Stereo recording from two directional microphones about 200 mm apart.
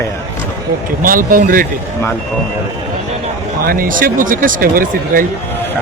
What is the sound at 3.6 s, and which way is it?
Speech, 45° right (ahead or behind).